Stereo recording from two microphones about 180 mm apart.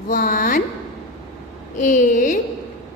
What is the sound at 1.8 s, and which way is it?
Speech, 45° left (ahead or behind).